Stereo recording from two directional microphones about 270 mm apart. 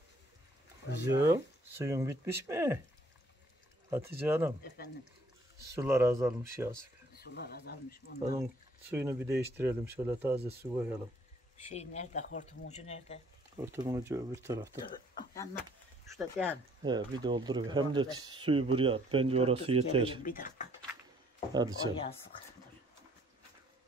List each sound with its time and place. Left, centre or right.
1.1 s speech: centre
3.9 s speech: centre
5.8 s speech: centre
7.2 s speech: left
8.9 s speech: centre
11.5 s speech: left
13.6 s speech: centre
15.1 s speech: centre
16.1 s speech: centre
16.8 s speech: centre
20.2 s speech: left
21.5 s speech: centre